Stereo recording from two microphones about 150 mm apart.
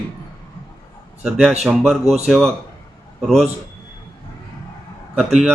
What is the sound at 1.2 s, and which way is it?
Speech, 5° right (ahead or behind).